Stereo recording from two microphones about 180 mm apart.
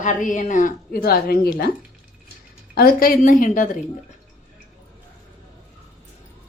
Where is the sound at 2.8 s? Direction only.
55° left (ahead or behind).